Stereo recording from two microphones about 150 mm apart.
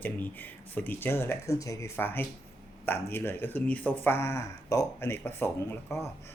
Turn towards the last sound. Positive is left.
turn(degrees=15)  # may be behind; listen again after turning